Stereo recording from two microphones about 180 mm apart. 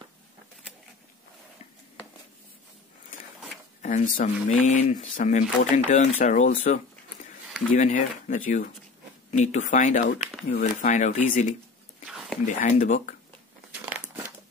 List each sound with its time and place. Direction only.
3.8 s speech: 40° left (ahead or behind)
12.1 s whispering: centre (ahead or behind)
12.5 s speech: 45° left (ahead or behind)